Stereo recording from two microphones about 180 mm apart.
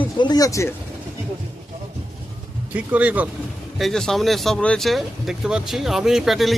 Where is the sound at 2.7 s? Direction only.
10° right (ahead or behind).